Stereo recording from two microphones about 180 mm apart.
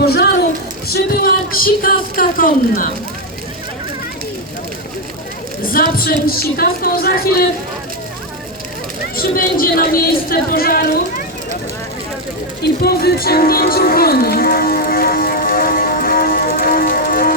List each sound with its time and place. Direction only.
0.0 s a sound: 65° left (ahead or behind)
0.9 s speech: 55° left (ahead or behind)
5.6 s speech: 55° left (ahead or behind)
9.1 s speech: 55° left (ahead or behind)
12.8 s music: 60° left (ahead or behind)